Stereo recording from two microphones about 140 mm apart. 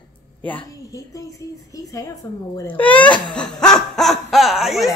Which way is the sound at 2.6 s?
10° left (ahead or behind).